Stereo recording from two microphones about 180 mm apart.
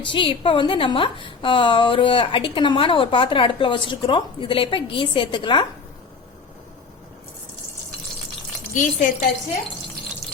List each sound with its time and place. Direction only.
0.0 s a woman's voice: 30° left (ahead or behind)
8.7 s a woman's voice: 45° left (ahead or behind)